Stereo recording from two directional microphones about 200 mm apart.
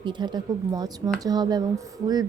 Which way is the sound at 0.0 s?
20° right (ahead or behind).